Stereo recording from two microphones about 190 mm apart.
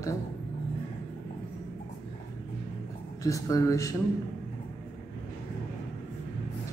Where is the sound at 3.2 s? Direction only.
15° left (ahead or behind).